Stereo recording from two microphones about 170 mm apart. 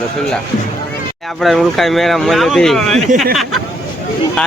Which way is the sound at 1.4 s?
Centre (ahead or behind).